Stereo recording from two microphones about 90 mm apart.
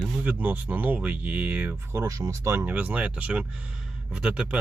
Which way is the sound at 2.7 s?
15° right (ahead or behind).